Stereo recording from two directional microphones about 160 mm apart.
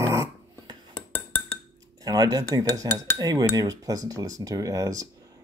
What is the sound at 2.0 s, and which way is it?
Cutlery, 25° right (ahead or behind).